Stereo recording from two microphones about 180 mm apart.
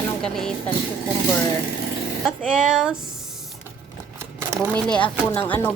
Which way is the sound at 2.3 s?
5° right (ahead or behind).